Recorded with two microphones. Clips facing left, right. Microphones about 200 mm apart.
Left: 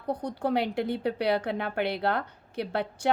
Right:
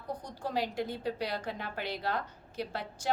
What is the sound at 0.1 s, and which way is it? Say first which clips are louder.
A woman's voice: left 8 dB; 65° left (ahead or behind).